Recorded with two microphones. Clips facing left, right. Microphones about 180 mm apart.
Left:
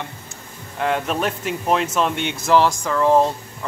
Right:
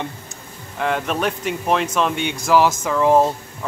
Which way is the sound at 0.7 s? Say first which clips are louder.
Even; centre (ahead or behind).